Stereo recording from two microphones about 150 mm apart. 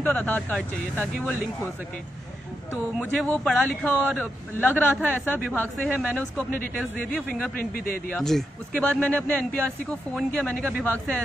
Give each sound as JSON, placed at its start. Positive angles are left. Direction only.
{"t": 0.0, "sound": "speech", "side_deg": 10}
{"t": 2.7, "sound": "speech", "side_deg": 5}
{"t": 7.7, "sound": "speech", "side_deg": 70}
{"t": 8.1, "sound": "speech", "side_deg": 5}